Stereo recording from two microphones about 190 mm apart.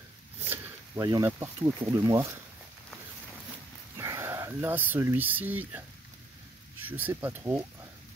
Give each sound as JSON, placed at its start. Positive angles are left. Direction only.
{"t": 0.5, "sound": "speech", "side_deg": -15}
{"t": 4.0, "sound": "speech", "side_deg": -15}
{"t": 6.9, "sound": "speech", "side_deg": -10}